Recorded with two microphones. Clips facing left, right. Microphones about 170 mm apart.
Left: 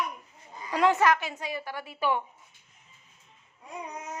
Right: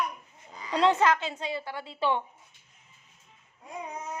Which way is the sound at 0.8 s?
25° right (ahead or behind).